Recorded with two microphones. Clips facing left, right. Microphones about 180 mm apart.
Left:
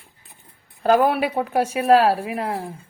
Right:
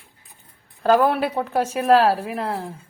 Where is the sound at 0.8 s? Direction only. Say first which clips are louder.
Even; 10° left (ahead or behind).